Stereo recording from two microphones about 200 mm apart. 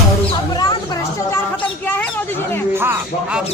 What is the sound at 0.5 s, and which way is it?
Speech, 20° left (ahead or behind).